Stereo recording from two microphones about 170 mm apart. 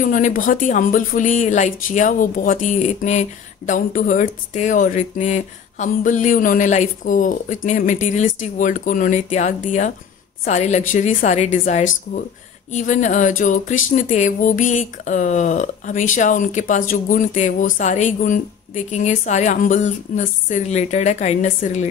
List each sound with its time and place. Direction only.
0.0 s speech: 50° left (ahead or behind)